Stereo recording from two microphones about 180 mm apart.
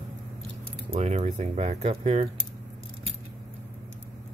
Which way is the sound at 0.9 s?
35° right (ahead or behind).